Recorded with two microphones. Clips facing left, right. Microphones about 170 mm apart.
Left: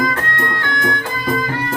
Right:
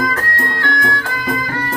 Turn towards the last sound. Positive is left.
turn(degrees=20)  # may be behind; listen again after turning